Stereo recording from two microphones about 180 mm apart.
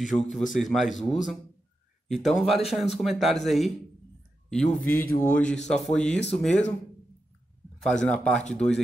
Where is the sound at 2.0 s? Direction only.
Centre (ahead or behind).